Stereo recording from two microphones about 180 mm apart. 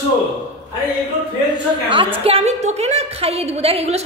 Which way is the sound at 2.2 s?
35° right (ahead or behind).